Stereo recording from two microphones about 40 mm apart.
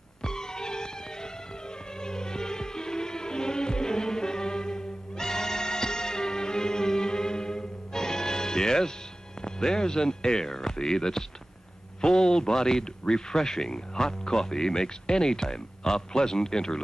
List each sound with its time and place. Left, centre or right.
0.2 s music: centre
9.4 s speech: centre